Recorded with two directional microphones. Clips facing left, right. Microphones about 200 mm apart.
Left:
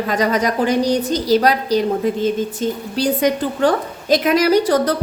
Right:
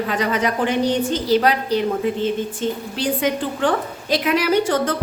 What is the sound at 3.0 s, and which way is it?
A woman's voice, 40° left (ahead or behind).